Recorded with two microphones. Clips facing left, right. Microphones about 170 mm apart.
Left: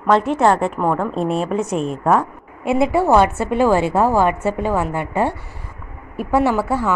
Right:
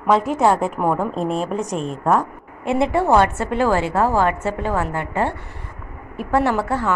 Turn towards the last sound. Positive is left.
turn(degrees=10)  # may be behind; listen again after turning